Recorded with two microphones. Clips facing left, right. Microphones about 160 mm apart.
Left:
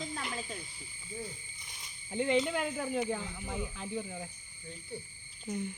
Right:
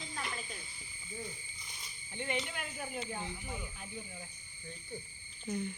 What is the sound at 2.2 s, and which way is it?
Speech, 90° left.